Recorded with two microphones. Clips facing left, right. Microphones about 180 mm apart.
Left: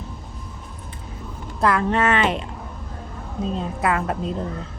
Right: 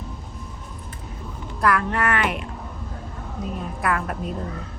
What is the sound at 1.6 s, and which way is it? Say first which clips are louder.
Speech: left 3 dB; 25° left (ahead or behind).